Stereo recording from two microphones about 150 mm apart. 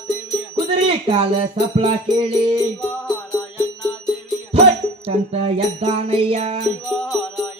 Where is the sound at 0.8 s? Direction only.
40° right (ahead or behind).